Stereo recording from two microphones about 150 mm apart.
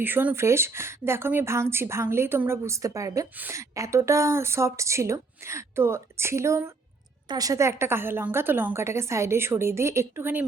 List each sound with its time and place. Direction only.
0.0 s a woman's voice: 15° right (ahead or behind)